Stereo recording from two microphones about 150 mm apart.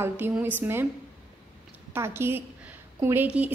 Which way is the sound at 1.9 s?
15° right (ahead or behind).